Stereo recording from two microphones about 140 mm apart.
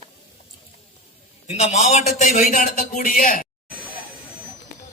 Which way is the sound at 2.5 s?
70° left (ahead or behind).